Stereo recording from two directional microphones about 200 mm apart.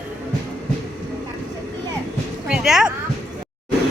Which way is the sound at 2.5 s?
5° right (ahead or behind).